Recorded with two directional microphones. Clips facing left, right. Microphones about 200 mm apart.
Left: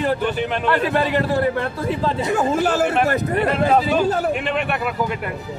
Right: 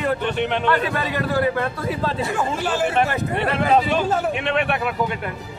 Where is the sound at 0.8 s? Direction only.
30° left (ahead or behind).